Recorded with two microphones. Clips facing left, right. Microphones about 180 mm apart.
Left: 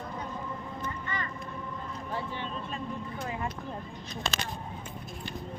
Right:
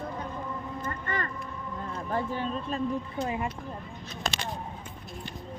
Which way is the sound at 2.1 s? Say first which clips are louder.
Right 6 dB; 40° right (ahead or behind).